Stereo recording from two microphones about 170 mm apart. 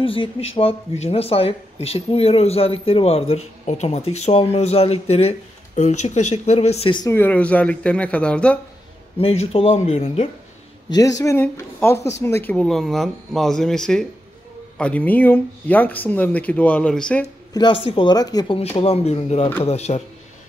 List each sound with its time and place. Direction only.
0.0 s speech: 30° left (ahead or behind)
7.1 s speech: 10° left (ahead or behind)
9.2 s speech: 35° left (ahead or behind)
10.9 s speech: 20° left (ahead or behind)
17.6 s speech: 30° left (ahead or behind)
18.6 s speech: 35° left (ahead or behind)